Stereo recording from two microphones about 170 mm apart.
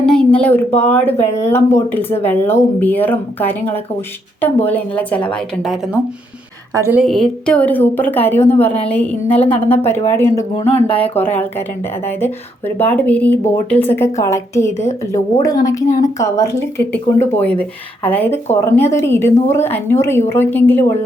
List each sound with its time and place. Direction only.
0.0 s a sound: 5° left (ahead or behind)
0.8 s a woman's voice: 10° left (ahead or behind)
6.7 s a woman's voice: 15° right (ahead or behind)
7.0 s a woman's voice: 5° left (ahead or behind)
10.7 s speech: 35° left (ahead or behind)
12.0 s a woman's voice: 10° left (ahead or behind)